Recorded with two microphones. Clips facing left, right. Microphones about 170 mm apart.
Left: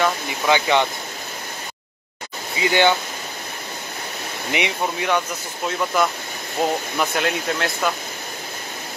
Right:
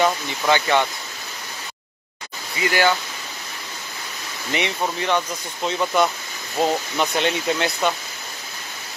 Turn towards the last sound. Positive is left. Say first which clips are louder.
# right 1 dB
turn(degrees=0)  # may be behind; listen again after turning